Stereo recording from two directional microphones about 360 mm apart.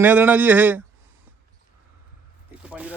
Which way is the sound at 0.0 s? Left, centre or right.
Centre.